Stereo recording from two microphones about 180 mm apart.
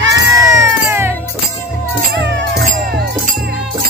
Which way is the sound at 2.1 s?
75° right (ahead or behind).